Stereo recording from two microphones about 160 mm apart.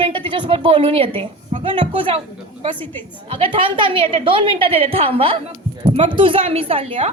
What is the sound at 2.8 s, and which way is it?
Speech, 10° left (ahead or behind).